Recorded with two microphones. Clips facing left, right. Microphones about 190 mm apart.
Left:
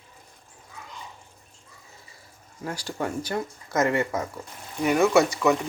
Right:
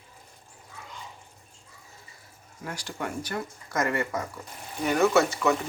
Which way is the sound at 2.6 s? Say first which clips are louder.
Left 4 dB; 30° left (ahead or behind).